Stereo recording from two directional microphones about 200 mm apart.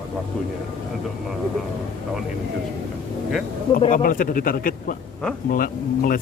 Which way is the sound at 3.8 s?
45° left (ahead or behind).